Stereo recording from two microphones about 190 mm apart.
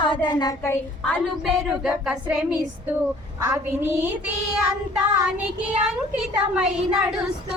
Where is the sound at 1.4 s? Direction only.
5° right (ahead or behind).